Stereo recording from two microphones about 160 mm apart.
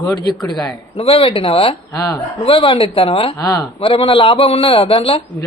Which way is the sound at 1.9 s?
20° left (ahead or behind).